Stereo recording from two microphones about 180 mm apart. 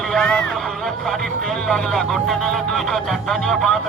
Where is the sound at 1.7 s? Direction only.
Centre (ahead or behind).